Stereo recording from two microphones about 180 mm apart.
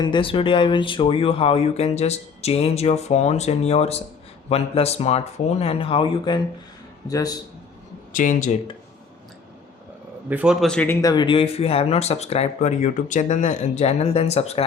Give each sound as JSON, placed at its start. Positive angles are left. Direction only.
{"t": 0.0, "sound": "speech", "side_deg": 25}
{"t": 8.1, "sound": "speech", "side_deg": 45}
{"t": 10.2, "sound": "a man's voice", "side_deg": -5}
{"t": 11.0, "sound": "speech", "side_deg": 25}